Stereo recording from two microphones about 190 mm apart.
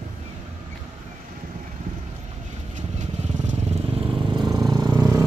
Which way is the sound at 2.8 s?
40° right (ahead or behind).